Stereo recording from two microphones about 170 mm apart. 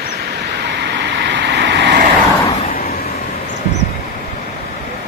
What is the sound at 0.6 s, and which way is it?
Vehicle, 80° right.